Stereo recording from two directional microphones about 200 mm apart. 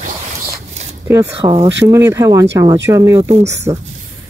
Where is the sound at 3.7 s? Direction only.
25° right (ahead or behind).